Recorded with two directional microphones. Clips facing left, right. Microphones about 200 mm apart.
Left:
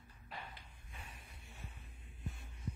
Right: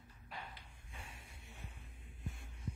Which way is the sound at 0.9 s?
25° right (ahead or behind).